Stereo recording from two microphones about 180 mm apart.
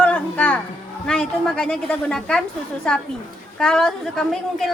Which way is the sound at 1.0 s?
5° left (ahead or behind).